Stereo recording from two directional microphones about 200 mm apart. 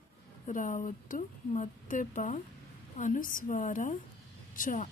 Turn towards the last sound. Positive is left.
turn(degrees=40)  # may be behind; listen again after turning